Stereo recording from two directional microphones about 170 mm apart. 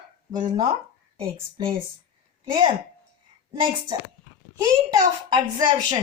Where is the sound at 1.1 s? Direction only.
35° right (ahead or behind).